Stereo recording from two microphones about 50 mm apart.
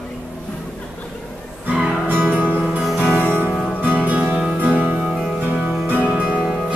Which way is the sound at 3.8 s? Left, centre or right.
Right.